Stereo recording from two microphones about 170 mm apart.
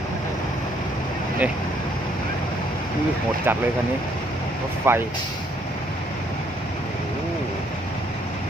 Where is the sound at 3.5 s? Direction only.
10° right (ahead or behind).